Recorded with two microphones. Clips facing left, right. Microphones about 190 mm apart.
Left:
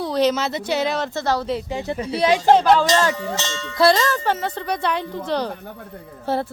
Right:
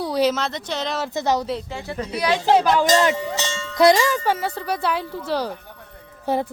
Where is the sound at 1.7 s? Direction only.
20° left (ahead or behind).